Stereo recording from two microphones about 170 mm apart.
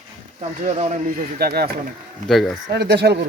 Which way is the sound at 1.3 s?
65° right (ahead or behind).